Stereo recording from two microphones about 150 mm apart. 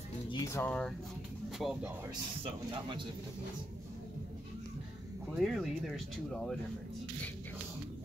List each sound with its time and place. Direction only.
0.3 s speech: 20° left (ahead or behind)
1.6 s speech: centre (ahead or behind)
2.4 s speech: 30° right (ahead or behind)
5.3 s speech: centre (ahead or behind)